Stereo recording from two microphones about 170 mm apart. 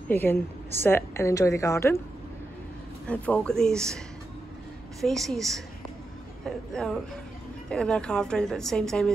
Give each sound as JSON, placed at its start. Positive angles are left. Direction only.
{"t": 0.1, "sound": "a woman's voice", "side_deg": 10}
{"t": 3.1, "sound": "a woman's voice", "side_deg": 10}
{"t": 5.0, "sound": "a woman's voice", "side_deg": 0}